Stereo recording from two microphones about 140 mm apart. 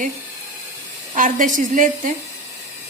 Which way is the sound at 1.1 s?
70° right (ahead or behind).